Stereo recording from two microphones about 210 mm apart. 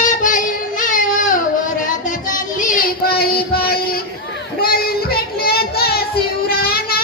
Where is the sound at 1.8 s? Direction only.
40° left (ahead or behind).